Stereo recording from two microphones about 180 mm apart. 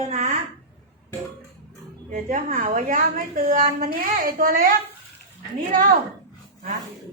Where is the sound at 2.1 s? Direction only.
50° right (ahead or behind).